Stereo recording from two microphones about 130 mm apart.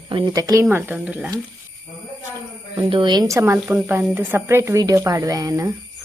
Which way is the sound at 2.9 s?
40° right (ahead or behind).